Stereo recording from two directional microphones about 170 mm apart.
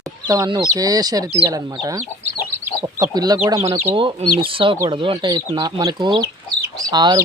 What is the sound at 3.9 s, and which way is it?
Speech, 30° right (ahead or behind).